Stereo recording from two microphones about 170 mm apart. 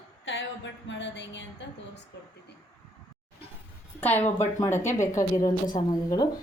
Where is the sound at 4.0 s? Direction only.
10° left (ahead or behind).